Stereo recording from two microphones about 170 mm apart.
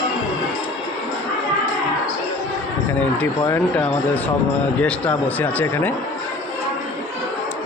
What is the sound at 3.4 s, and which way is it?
Speech, 10° left (ahead or behind).